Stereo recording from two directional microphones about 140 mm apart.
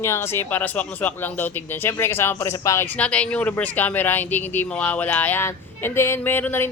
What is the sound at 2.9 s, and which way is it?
A woman's voice, 10° left (ahead or behind).